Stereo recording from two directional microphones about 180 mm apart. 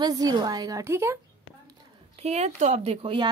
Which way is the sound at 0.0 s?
20° right (ahead or behind).